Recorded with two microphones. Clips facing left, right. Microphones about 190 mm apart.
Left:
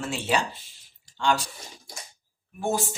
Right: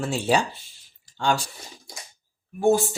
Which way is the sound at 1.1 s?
45° right (ahead or behind).